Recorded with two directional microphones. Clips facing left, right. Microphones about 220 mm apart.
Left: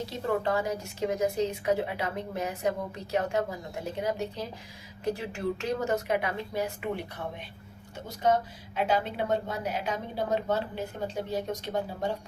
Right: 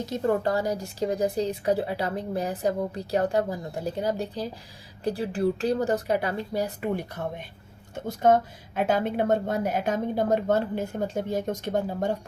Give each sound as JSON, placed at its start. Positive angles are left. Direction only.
{"t": 0.0, "sound": "a woman's voice", "side_deg": -40}
{"t": 7.9, "sound": "a woman's voice", "side_deg": -50}